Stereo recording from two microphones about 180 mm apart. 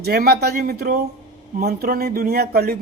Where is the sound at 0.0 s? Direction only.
60° right (ahead or behind).